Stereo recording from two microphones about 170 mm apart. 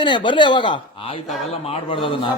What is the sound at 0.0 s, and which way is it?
A man's voice, 30° left (ahead or behind).